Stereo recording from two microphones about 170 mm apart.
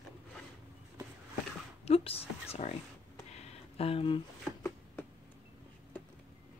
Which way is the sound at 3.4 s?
35° left (ahead or behind).